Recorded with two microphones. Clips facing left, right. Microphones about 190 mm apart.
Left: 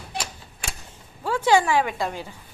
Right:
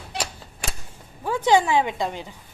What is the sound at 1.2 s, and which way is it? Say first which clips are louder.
A woman's voice: even; 20° right (ahead or behind).